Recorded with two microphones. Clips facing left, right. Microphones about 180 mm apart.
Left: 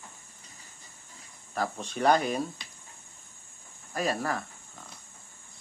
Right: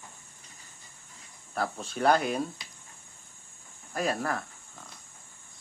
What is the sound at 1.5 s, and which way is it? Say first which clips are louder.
Speech: even; centre (ahead or behind).